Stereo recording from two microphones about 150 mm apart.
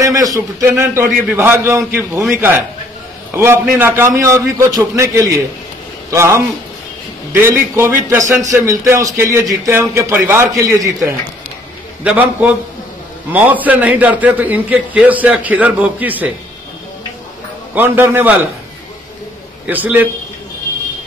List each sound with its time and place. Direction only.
0.0 s a man's voice: 25° right (ahead or behind)
3.3 s a man's voice: 15° right (ahead or behind)
17.7 s a man's voice: 15° right (ahead or behind)
19.6 s a man's voice: 10° right (ahead or behind)